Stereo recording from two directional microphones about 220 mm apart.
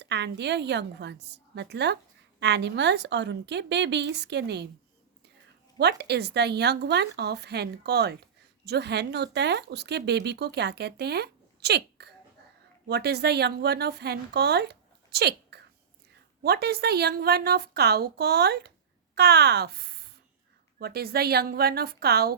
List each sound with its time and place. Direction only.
0.0 s speech: 50° right (ahead or behind)
5.8 s a woman's voice: 50° right (ahead or behind)